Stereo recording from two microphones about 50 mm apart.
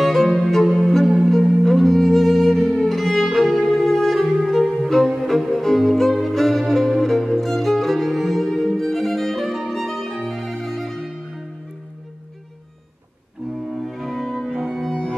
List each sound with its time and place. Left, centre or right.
0.0 s music: centre
13.7 s music: centre